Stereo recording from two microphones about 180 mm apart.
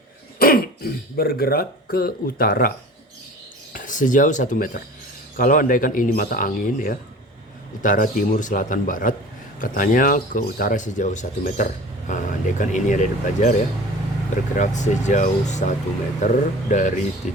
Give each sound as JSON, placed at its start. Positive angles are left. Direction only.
{"t": 0.3, "sound": "speech", "side_deg": 55}